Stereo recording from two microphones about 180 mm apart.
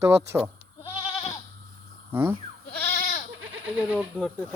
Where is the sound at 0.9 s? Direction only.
30° left (ahead or behind).